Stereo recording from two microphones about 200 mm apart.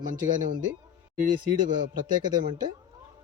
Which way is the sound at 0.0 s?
40° right (ahead or behind).